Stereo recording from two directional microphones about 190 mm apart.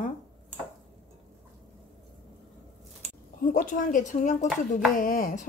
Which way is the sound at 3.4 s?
45° left (ahead or behind).